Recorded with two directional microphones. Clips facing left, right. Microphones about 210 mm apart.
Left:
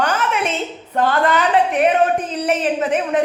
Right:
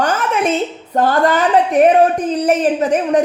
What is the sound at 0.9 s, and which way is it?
A woman's voice, 40° right (ahead or behind).